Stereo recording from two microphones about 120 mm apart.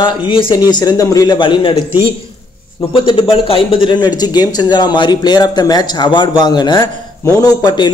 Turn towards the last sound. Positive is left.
turn(degrees=35)  # may be behind; listen again after turning